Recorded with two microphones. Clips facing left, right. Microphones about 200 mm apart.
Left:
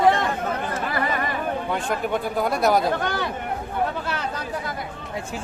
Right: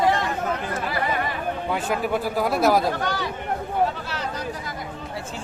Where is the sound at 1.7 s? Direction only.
5° right (ahead or behind).